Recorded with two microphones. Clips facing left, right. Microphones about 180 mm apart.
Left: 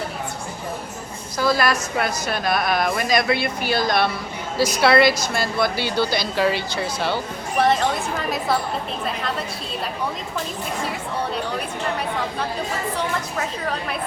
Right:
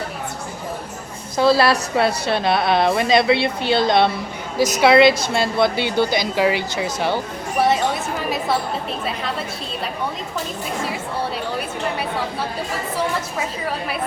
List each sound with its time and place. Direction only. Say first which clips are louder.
1.4 s a woman's voice: right 5 dB; 30° right (ahead or behind)
7.6 s speech: right 1 dB; 5° right (ahead or behind)